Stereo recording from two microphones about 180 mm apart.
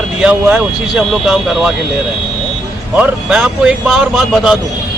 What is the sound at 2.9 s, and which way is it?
Speech, 5° right (ahead or behind).